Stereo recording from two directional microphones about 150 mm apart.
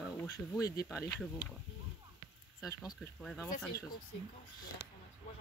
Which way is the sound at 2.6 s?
20° left (ahead or behind).